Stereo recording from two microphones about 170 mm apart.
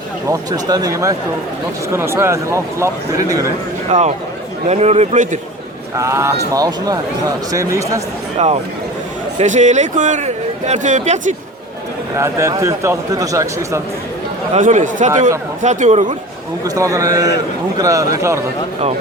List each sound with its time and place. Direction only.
0.3 s a man's voice: 20° right (ahead or behind)
3.9 s a man's voice: 45° right (ahead or behind)
6.0 s a man's voice: 15° right (ahead or behind)
8.4 s a man's voice: 40° right (ahead or behind)
12.1 s a man's voice: 15° right (ahead or behind)
14.5 s a man's voice: 45° right (ahead or behind)
16.6 s speech: 20° right (ahead or behind)